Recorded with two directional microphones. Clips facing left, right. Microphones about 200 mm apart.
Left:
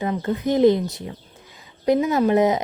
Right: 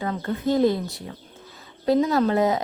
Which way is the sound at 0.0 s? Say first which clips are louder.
Left 2 dB; 20° left (ahead or behind).